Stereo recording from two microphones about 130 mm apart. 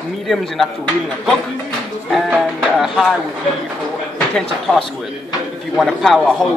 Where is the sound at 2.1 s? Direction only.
5° right (ahead or behind).